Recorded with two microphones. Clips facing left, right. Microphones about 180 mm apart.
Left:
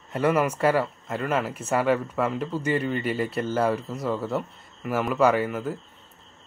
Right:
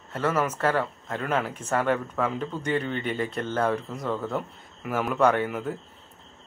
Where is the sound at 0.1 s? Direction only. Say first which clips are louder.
Left 3 dB; 15° left (ahead or behind).